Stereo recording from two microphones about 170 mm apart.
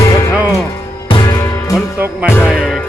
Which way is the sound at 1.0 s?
25° left (ahead or behind).